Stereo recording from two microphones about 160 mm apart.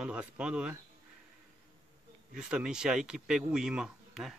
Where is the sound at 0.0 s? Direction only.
5° right (ahead or behind).